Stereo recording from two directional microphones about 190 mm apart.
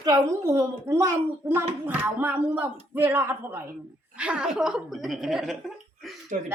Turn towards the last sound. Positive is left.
turn(degrees=-45)  # may be behind; listen again after turning